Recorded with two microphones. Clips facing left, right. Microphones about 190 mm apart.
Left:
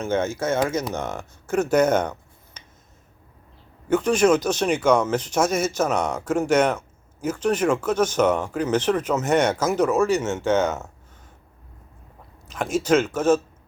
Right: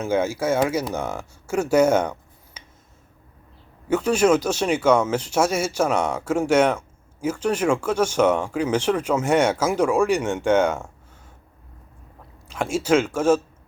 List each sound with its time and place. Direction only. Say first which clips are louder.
0.0 s speech: right 1 dB; 10° right (ahead or behind)
3.8 s speech: even; 10° right (ahead or behind)
12.5 s speech: even; 10° right (ahead or behind)